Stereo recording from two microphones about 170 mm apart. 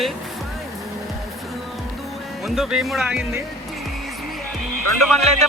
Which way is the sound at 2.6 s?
Centre (ahead or behind).